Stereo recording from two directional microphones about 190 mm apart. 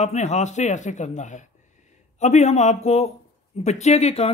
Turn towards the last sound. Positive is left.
turn(degrees=35)  # may be behind; listen again after turning